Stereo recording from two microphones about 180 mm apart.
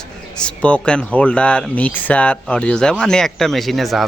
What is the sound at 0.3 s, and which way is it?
Speech, 5° left (ahead or behind).